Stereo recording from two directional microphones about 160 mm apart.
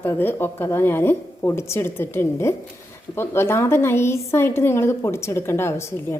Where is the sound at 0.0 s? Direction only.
15° left (ahead or behind).